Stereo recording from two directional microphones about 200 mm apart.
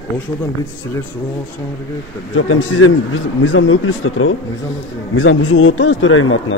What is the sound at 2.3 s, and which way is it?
Speech, 90° left.